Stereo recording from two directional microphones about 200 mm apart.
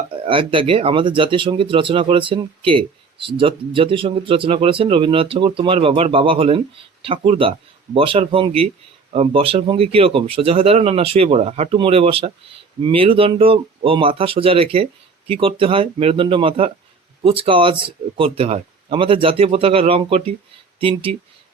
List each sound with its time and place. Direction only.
0.3 s speech: 25° right (ahead or behind)